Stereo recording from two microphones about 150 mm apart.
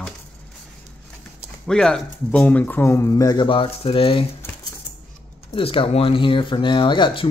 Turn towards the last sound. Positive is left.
turn(degrees=30)  # may be behind; listen again after turning